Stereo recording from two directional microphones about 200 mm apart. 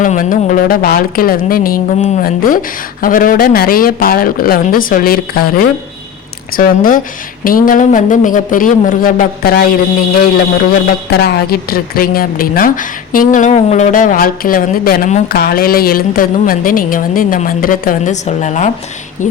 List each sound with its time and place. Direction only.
0.0 s speech: 40° left (ahead or behind)
11.1 s speech: 55° left (ahead or behind); by 18.7 s 35° left (ahead or behind)